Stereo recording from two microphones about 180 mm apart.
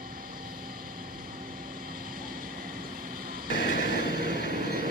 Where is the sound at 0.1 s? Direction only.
55° right (ahead or behind).